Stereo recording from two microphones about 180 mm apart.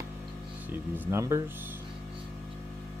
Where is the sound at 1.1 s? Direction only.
15° right (ahead or behind).